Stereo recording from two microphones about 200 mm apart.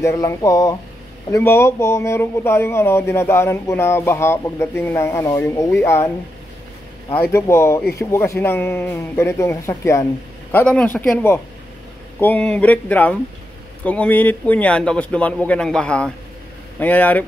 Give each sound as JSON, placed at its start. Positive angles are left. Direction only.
{"t": 0.0, "sound": "a man's voice", "side_deg": 15}